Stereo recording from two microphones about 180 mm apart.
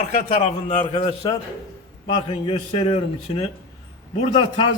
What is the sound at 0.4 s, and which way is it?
A man's voice, 35° left (ahead or behind).